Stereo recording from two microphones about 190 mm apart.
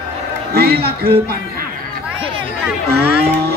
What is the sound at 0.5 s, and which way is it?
Speech, 55° right (ahead or behind).